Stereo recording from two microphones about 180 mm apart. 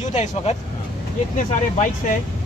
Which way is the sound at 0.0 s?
40° left (ahead or behind).